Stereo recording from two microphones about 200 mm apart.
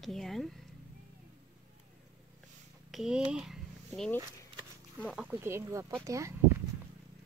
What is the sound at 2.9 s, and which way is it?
Speech, centre (ahead or behind).